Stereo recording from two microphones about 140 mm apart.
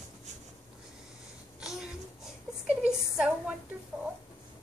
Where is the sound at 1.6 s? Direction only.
5° right (ahead or behind).